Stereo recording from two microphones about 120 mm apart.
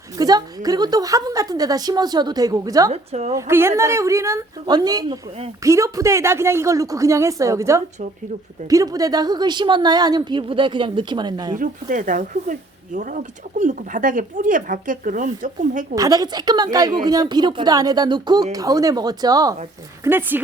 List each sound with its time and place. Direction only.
0.2 s a woman's voice: 35° right (ahead or behind)
2.9 s a woman's voice: 60° right (ahead or behind)
3.3 s a woman's voice: 20° right (ahead or behind); by 11.5 s 35° right (ahead or behind)
11.5 s speech: 90° right
16.0 s a woman's voice: 30° right (ahead or behind)
20.1 s speech: 15° right (ahead or behind)